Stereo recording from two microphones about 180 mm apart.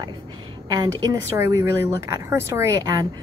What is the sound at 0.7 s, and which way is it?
Speech, 20° right (ahead or behind).